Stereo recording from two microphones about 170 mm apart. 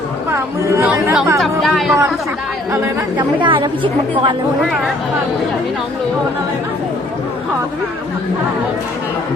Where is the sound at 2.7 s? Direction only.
20° right (ahead or behind).